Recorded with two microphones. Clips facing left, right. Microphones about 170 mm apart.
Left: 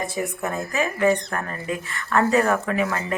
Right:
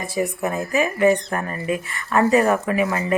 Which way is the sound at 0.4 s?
15° right (ahead or behind).